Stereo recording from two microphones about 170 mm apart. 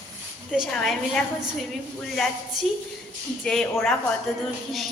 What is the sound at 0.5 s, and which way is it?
A woman's voice, centre (ahead or behind).